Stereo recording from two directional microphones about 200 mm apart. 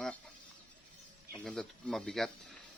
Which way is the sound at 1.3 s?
Centre (ahead or behind).